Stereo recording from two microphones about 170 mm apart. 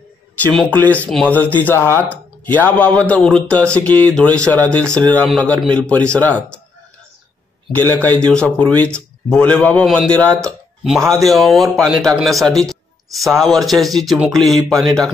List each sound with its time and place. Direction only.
0.4 s speech: 5° left (ahead or behind)
8.2 s a man's voice: 5° left (ahead or behind)
10.4 s a sound: centre (ahead or behind)
11.0 s a man's voice: 20° right (ahead or behind)
11.2 s a man's voice: centre (ahead or behind)